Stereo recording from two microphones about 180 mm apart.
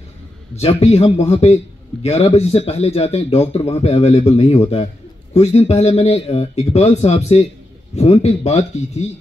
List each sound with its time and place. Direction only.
0.6 s speech: 35° left (ahead or behind)